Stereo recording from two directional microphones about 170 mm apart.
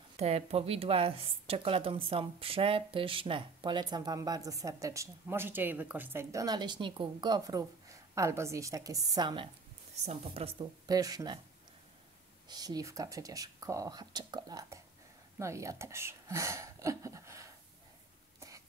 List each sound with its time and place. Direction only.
0.2 s a woman's voice: 40° right (ahead or behind)
10.6 s a woman's voice: 20° right (ahead or behind)
12.4 s a woman's voice: 20° right (ahead or behind)